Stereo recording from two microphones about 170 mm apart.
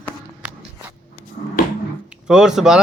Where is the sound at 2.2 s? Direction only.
5° right (ahead or behind).